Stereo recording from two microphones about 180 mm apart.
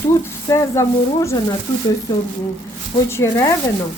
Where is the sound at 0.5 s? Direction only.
15° left (ahead or behind).